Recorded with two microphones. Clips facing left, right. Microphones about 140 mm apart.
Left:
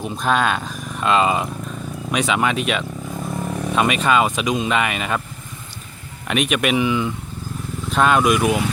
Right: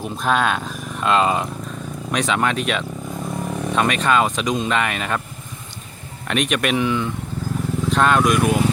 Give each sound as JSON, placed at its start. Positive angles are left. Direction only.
{"t": 0.0, "sound": "speech", "side_deg": 0}
{"t": 6.2, "sound": "speech", "side_deg": 5}